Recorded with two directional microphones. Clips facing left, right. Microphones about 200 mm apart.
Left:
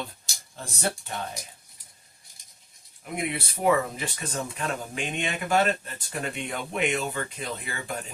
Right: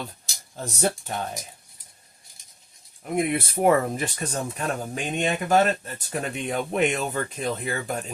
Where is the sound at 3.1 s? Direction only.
50° right (ahead or behind).